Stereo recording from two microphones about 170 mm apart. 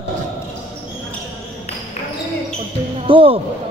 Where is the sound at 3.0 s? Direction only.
30° right (ahead or behind).